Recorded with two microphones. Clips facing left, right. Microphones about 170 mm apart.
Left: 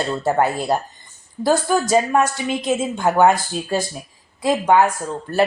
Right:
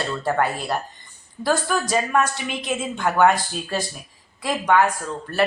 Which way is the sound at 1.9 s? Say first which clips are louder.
Left 4 dB; 25° left (ahead or behind).